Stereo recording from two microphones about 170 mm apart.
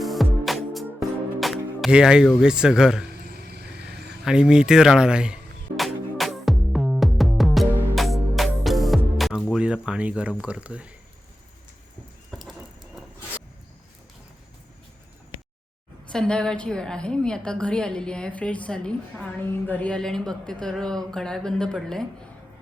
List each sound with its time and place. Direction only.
0.0 s music: centre (ahead or behind)
1.4 s speech: centre (ahead or behind)
3.3 s vehicle: 70° right (ahead or behind)
4.2 s music: 5° right (ahead or behind)
12.3 s a sound: centre (ahead or behind)
16.0 s a woman's voice: 5° left (ahead or behind)